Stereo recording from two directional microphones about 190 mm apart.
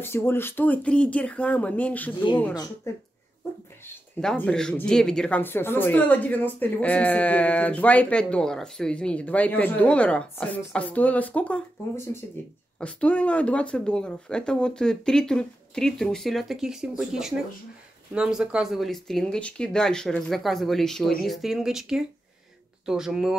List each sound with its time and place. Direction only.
0.0 s speech: 10° left (ahead or behind)
2.5 s speech: 20° left (ahead or behind)
3.8 s speech: 5° left (ahead or behind)
12.7 s speech: 5° left (ahead or behind)